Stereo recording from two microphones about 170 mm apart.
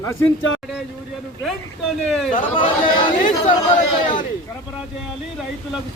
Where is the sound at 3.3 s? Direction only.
25° left (ahead or behind).